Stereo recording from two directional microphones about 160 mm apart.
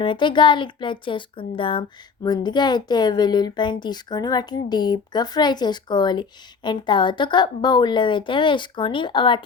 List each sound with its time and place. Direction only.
0.0 s speech: 30° left (ahead or behind)